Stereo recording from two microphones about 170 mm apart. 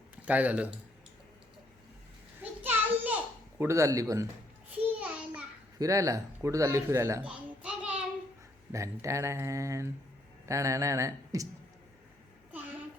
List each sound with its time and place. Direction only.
0.2 s speech: 10° right (ahead or behind)
2.4 s a sound: 10° right (ahead or behind)
3.6 s speech: 15° right (ahead or behind)
4.9 s child singing: 10° right (ahead or behind)
5.8 s speech: 20° right (ahead or behind)
8.7 s speech: 15° right (ahead or behind)